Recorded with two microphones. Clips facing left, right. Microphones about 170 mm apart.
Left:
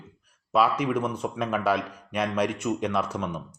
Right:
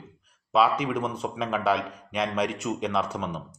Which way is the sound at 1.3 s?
Centre (ahead or behind).